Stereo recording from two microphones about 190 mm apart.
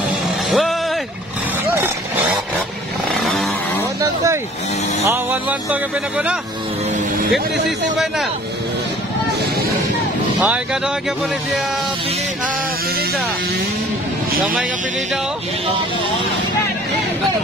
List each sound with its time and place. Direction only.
0.5 s music: centre (ahead or behind)
3.2 s vehicle: centre (ahead or behind)
4.0 s vehicle: 15° right (ahead or behind)
5.1 s music: 10° right (ahead or behind)
10.4 s speech: 5° right (ahead or behind)